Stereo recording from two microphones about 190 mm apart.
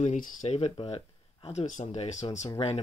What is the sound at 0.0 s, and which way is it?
Speech, 40° left (ahead or behind).